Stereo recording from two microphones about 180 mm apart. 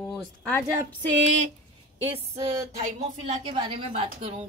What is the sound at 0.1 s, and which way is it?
Speech, 5° left (ahead or behind).